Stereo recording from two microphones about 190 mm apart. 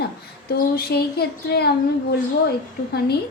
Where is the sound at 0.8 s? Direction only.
55° left (ahead or behind).